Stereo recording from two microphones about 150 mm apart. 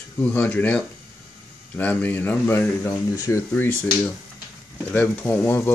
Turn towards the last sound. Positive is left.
turn(degrees=15)  # may be behind; listen again after turning